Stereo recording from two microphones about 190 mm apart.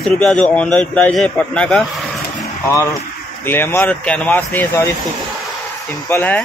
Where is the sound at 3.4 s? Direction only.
10° left (ahead or behind).